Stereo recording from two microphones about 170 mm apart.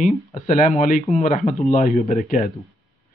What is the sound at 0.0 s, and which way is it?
Speech, 50° left (ahead or behind).